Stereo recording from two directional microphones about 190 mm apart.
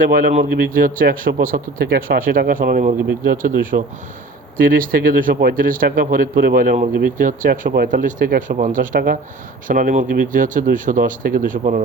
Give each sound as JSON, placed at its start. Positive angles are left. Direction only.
{"t": 0.0, "sound": "speech", "side_deg": -50}